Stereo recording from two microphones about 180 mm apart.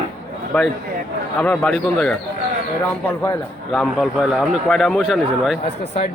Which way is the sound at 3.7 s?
Centre (ahead or behind).